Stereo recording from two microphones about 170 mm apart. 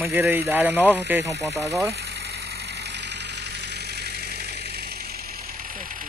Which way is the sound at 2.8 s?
90° right.